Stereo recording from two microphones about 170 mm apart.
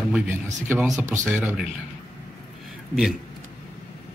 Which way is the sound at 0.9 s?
20° right (ahead or behind).